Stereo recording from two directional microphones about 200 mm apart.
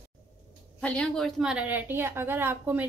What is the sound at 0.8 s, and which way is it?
A woman's voice, 5° left (ahead or behind).